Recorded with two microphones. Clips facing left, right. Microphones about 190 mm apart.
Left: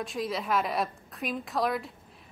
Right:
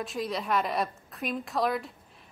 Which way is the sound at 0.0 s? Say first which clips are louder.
Even; centre (ahead or behind).